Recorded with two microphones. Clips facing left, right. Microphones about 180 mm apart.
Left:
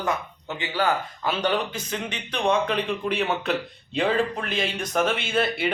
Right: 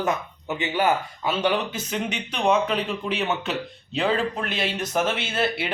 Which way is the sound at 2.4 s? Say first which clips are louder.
Right 1 dB; 5° right (ahead or behind).